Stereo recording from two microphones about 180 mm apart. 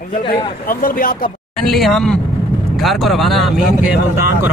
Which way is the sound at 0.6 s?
50° left (ahead or behind).